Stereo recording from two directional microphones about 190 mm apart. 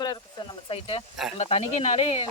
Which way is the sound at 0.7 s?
30° left (ahead or behind).